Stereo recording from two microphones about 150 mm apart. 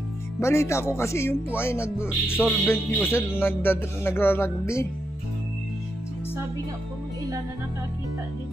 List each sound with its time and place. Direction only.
0.4 s music: 20° left (ahead or behind)